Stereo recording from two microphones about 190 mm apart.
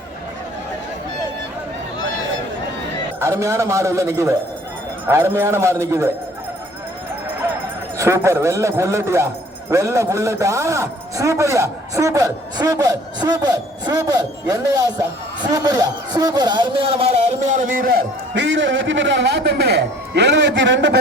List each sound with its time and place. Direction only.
3.2 s a man's voice: 15° right (ahead or behind)
7.9 s a man's voice: 15° right (ahead or behind); by 17.8 s 40° right (ahead or behind)
18.3 s a man's voice: 75° right (ahead or behind)